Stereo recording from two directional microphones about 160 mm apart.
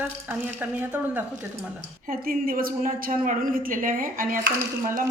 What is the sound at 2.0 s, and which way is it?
A woman's voice, 60° right (ahead or behind).